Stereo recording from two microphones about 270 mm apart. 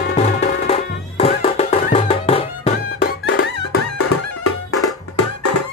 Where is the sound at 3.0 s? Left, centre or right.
Left.